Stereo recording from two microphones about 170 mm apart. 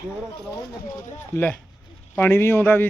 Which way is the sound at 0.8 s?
50° left (ahead or behind).